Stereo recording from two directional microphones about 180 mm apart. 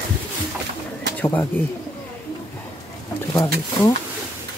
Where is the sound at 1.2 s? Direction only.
10° left (ahead or behind).